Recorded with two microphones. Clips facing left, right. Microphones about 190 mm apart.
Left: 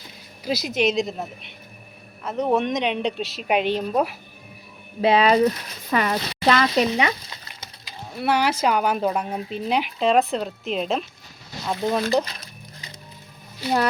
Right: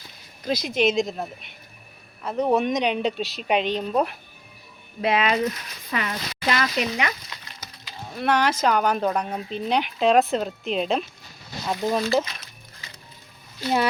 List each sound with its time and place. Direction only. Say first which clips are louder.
0.4 s speech: even; 5° left (ahead or behind)
5.0 s speech: left 5 dB; 30° left (ahead or behind)
6.7 s speech: left 5 dB; 30° left (ahead or behind)
8.2 s speech: even; 10° left (ahead or behind)
13.6 s speech: left 1 dB; centre (ahead or behind)